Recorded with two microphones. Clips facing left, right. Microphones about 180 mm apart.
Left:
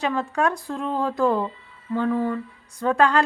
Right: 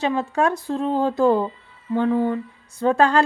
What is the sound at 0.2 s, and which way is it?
A woman's voice, 25° right (ahead or behind).